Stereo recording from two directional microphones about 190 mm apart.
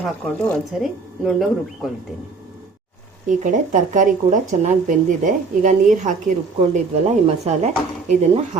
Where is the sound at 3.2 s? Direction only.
40° right (ahead or behind).